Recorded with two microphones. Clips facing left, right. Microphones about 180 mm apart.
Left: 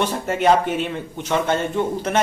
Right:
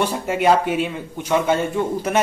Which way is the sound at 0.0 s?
10° right (ahead or behind).